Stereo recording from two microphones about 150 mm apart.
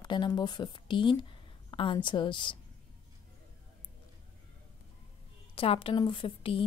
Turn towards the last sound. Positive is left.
turn(degrees=35)  # may be behind; listen again after turning